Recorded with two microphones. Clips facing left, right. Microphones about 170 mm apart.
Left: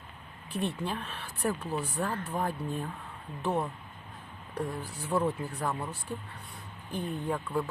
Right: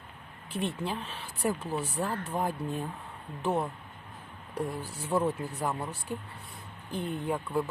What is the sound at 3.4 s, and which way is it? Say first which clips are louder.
Speech: right 1 dB; 5° right (ahead or behind).